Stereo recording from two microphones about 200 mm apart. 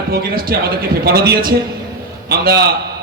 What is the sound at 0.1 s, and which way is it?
A man's voice, 50° right (ahead or behind).